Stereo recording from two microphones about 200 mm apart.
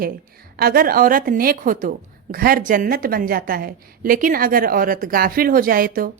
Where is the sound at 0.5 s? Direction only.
50° right (ahead or behind).